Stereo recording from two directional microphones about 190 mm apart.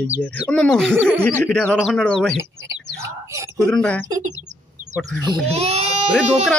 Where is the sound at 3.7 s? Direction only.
5° left (ahead or behind).